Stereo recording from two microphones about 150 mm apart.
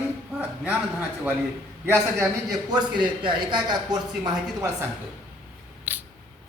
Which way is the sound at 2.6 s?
30° right (ahead or behind).